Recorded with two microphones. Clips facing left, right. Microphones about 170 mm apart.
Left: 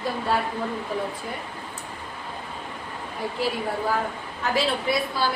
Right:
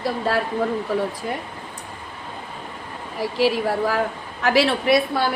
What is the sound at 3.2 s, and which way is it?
A woman's voice, 90° right.